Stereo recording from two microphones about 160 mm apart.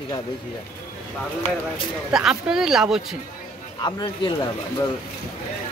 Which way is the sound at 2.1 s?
5° right (ahead or behind).